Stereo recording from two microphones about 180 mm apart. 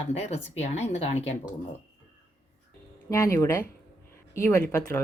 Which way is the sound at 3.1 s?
15° left (ahead or behind).